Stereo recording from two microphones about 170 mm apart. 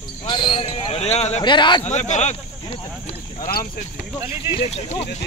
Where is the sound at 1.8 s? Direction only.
40° left (ahead or behind).